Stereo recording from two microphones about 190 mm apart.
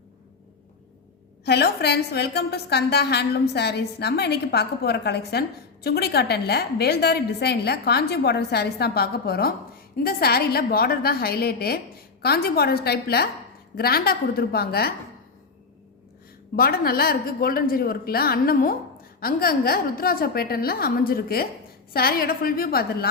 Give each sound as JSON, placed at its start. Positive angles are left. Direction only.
{"t": 1.5, "sound": "a woman's voice", "side_deg": 60}
{"t": 16.6, "sound": "a woman's voice", "side_deg": 50}